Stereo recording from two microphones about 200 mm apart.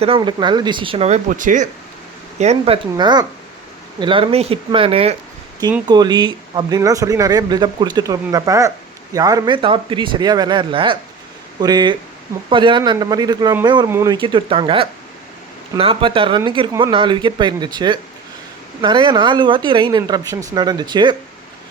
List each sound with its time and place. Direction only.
0.0 s speech: 25° right (ahead or behind)